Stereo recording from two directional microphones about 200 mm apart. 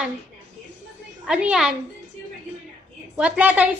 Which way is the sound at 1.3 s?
5° right (ahead or behind).